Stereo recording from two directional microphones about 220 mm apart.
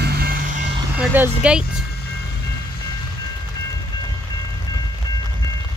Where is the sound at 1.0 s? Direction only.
5° right (ahead or behind).